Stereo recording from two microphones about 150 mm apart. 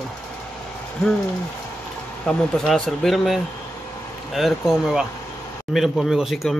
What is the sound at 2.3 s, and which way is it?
Speech, 5° left (ahead or behind).